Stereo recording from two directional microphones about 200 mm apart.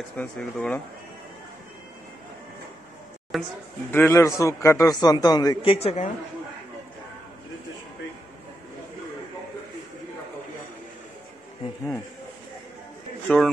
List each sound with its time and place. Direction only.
0.1 s a man's voice: 5° left (ahead or behind)
3.3 s speech: centre (ahead or behind)
3.9 s a man's voice: 10° left (ahead or behind); by 6.0 s 30° left (ahead or behind)
13.3 s a man's voice: 5° left (ahead or behind)